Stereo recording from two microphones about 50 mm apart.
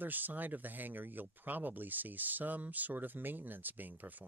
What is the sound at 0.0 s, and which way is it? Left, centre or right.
Speech, right.